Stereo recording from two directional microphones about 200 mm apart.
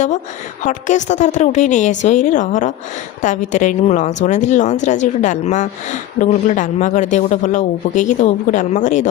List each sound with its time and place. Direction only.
0.6 s a woman's voice: 35° left (ahead or behind)